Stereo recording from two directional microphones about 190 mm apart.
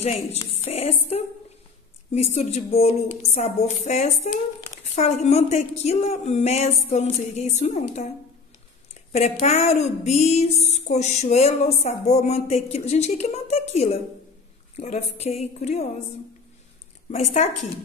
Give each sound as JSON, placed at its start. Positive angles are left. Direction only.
{"t": 0.5, "sound": "music", "side_deg": 30}
{"t": 2.3, "sound": "speech", "side_deg": 35}
{"t": 9.1, "sound": "speech", "side_deg": 35}
{"t": 17.1, "sound": "speech", "side_deg": 35}